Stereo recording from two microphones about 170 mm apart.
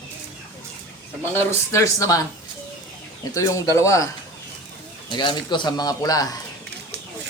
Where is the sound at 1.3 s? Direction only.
15° left (ahead or behind).